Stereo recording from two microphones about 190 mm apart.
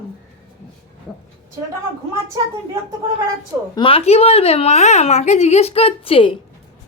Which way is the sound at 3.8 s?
30° left (ahead or behind).